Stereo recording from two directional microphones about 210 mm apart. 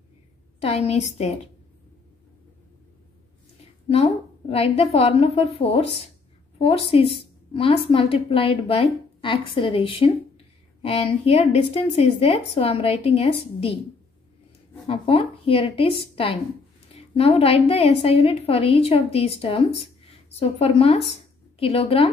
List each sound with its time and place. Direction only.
0.6 s a woman's voice: 30° left (ahead or behind)
3.9 s a woman's voice: 30° left (ahead or behind)
14.9 s a woman's voice: 25° left (ahead or behind)